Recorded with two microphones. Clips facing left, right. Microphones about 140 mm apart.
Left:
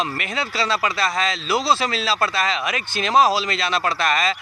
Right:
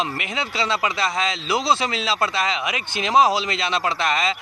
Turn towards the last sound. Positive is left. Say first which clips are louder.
# left 1 dB
turn(degrees=-20)  # may be behind; listen again after turning